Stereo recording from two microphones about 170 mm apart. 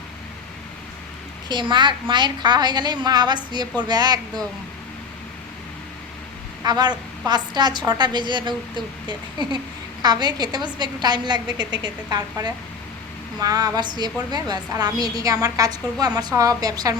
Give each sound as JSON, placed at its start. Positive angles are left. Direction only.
{"t": 1.5, "sound": "a woman's voice", "side_deg": -25}
{"t": 6.7, "sound": "a woman's voice", "side_deg": -25}